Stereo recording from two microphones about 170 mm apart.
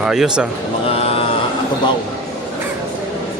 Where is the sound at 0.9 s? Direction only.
35° left (ahead or behind).